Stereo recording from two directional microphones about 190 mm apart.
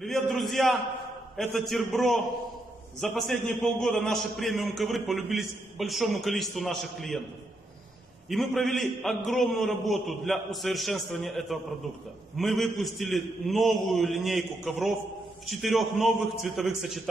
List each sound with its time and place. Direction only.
0.0 s a man's voice: centre (ahead or behind)
8.3 s a man's voice: centre (ahead or behind)